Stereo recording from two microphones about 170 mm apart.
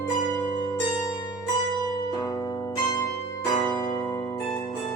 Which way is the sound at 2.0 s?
25° left (ahead or behind).